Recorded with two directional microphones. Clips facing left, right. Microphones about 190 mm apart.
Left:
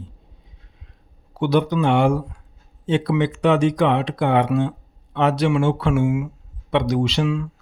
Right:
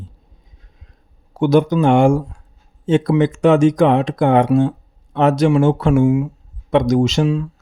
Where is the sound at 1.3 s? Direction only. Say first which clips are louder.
Right 5 dB; 45° right (ahead or behind).